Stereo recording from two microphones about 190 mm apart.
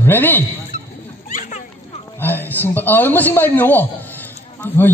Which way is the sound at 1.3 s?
45° left (ahead or behind).